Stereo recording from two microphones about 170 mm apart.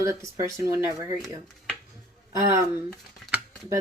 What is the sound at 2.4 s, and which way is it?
Speech, 15° right (ahead or behind).